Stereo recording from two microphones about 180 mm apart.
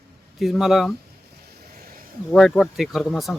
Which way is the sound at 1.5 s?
60° right (ahead or behind).